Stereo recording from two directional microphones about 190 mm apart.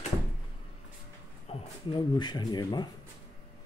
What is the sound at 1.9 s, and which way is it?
Speech, 20° left (ahead or behind).